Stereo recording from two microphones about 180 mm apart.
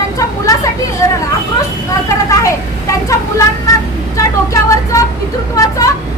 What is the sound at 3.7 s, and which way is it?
Speech, 20° left (ahead or behind).